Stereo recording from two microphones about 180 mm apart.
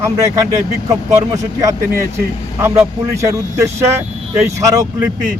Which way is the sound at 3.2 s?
15° right (ahead or behind).